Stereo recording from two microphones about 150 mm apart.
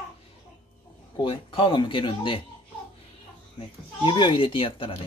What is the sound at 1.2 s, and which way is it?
Speech, 35° left (ahead or behind).